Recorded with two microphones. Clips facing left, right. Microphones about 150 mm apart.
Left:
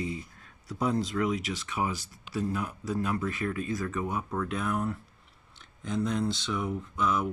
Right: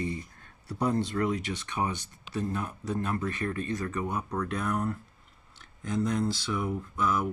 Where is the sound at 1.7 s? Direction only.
5° left (ahead or behind).